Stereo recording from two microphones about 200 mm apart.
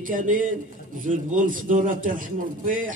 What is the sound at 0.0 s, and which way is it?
A man's voice, 40° right (ahead or behind).